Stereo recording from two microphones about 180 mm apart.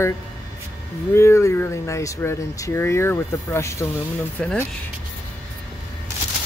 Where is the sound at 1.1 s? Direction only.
15° left (ahead or behind).